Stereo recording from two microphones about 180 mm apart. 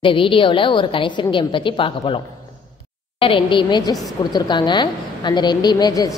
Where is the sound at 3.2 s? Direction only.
30° left (ahead or behind).